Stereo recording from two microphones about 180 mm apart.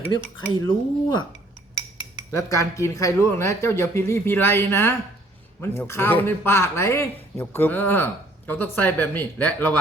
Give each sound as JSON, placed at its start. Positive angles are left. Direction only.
{"t": 0.2, "sound": "speech", "side_deg": 15}
{"t": 2.3, "sound": "speech", "side_deg": 20}